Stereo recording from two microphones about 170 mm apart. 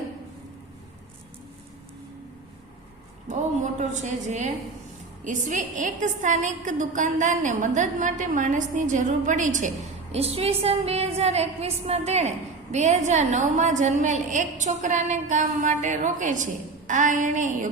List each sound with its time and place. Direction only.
3.2 s a woman's voice: 45° right (ahead or behind)